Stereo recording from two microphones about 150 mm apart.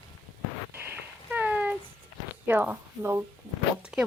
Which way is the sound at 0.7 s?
15° right (ahead or behind).